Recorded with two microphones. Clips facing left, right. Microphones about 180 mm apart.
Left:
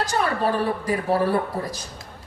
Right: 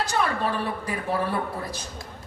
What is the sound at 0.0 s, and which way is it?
Speech, 40° left (ahead or behind).